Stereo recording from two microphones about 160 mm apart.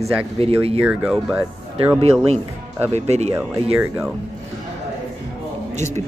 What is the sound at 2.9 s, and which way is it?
Speech, 45° right (ahead or behind).